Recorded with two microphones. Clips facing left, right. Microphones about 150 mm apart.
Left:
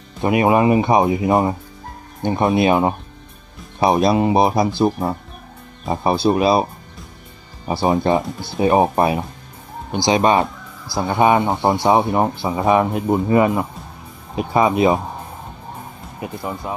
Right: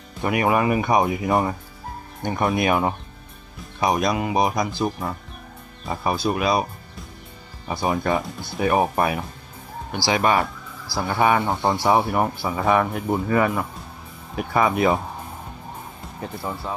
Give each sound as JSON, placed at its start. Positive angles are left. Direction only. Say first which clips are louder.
{"t": 0.2, "sound": "speech", "louder": "left 5 dB", "side_deg": 25}
{"t": 16.2, "sound": "speech", "louder": "left 3 dB", "side_deg": 15}